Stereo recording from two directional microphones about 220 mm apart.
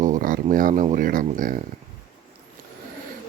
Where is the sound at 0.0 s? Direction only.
35° right (ahead or behind).